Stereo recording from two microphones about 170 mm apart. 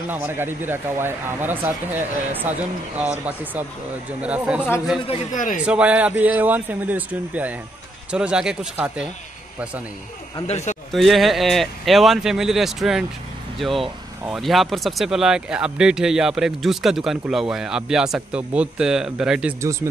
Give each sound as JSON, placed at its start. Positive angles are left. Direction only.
{"t": 0.1, "sound": "speech", "side_deg": -15}
{"t": 5.3, "sound": "a man's voice", "side_deg": 50}
{"t": 5.6, "sound": "speech", "side_deg": -5}
{"t": 10.4, "sound": "speech", "side_deg": 40}
{"t": 10.9, "sound": "speech", "side_deg": 0}